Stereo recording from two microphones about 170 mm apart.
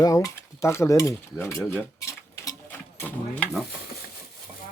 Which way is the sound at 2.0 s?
20° left (ahead or behind).